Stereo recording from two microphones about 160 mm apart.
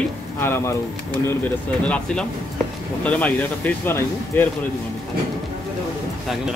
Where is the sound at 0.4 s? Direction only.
15° left (ahead or behind).